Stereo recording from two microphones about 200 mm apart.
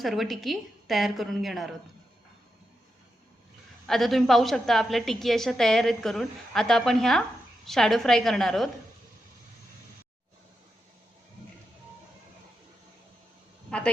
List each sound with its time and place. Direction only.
0.0 s a woman's voice: centre (ahead or behind)
3.8 s a woman's voice: centre (ahead or behind)
13.7 s speech: 5° left (ahead or behind)